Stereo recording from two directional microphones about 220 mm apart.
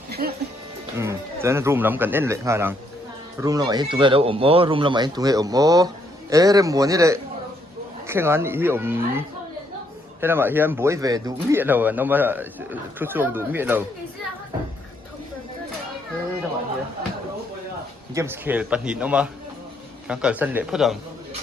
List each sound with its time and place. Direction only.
0.1 s music: 45° right (ahead or behind)
0.9 s speech: 10° right (ahead or behind)
18.1 s a man's voice: 10° right (ahead or behind)